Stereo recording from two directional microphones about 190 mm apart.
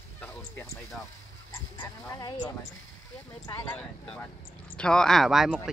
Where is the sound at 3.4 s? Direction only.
10° left (ahead or behind).